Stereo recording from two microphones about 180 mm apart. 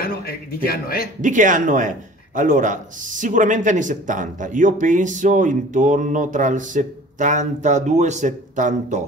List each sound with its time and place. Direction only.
0.0 s a man's voice: 55° left (ahead or behind)
1.2 s a man's voice: 45° right (ahead or behind)